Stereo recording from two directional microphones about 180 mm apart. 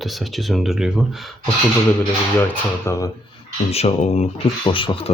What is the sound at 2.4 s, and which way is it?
Speech, 15° left (ahead or behind).